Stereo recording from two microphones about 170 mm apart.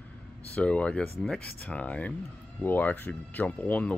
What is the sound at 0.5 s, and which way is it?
Speech, 5° left (ahead or behind).